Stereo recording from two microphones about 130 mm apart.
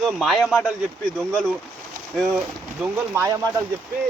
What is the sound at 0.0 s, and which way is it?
Speech, centre (ahead or behind).